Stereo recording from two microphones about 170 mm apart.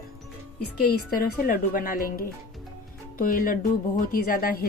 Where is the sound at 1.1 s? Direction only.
60° left (ahead or behind).